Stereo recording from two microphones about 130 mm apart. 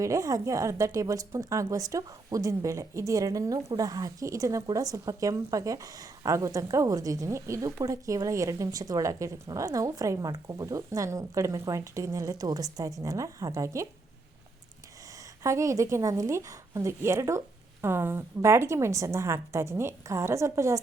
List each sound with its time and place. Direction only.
0.0 s speech: 25° right (ahead or behind)
15.4 s speech: 25° right (ahead or behind)